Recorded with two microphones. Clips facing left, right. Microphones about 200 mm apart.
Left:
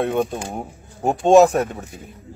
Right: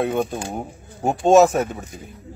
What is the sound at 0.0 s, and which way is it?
Speech, centre (ahead or behind).